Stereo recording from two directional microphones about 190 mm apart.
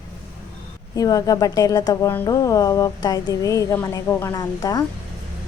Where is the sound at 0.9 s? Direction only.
20° left (ahead or behind).